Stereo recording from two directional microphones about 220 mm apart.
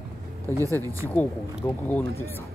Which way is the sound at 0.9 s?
10° left (ahead or behind).